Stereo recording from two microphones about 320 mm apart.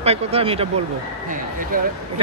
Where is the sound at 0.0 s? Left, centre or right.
Centre.